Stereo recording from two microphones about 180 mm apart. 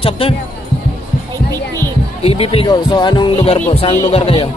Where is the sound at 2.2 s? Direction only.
35° left (ahead or behind).